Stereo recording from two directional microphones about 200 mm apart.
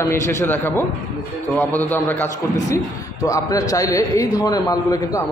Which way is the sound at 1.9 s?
10° left (ahead or behind).